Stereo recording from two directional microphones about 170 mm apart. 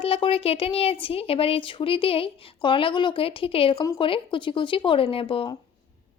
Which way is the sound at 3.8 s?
20° left (ahead or behind).